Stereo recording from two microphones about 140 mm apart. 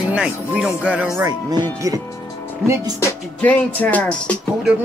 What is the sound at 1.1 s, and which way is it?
Speech, 25° right (ahead or behind).